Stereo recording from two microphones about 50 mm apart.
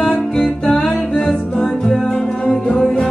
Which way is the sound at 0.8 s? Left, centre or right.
Centre.